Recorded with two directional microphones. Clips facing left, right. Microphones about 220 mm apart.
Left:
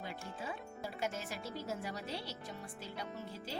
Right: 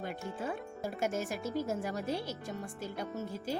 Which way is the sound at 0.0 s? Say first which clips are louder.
Right 6 dB; 50° right (ahead or behind).